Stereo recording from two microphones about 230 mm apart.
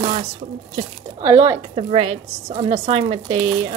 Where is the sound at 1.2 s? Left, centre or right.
Centre.